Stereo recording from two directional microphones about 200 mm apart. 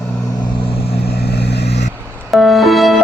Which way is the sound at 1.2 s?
55° left (ahead or behind).